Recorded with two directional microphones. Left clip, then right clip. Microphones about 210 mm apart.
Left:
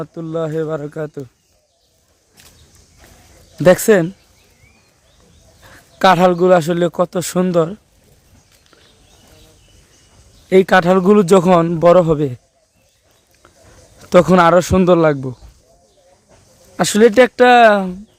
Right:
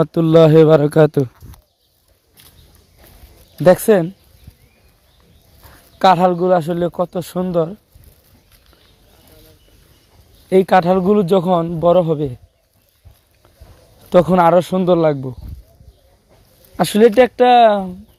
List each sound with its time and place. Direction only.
0.0 s speech: 45° right (ahead or behind)
3.6 s speech: 5° left (ahead or behind)
6.0 s a man's voice: 15° left (ahead or behind)
10.5 s a man's voice: 10° left (ahead or behind)
14.1 s a man's voice: 15° left (ahead or behind)
16.7 s a man's voice: centre (ahead or behind)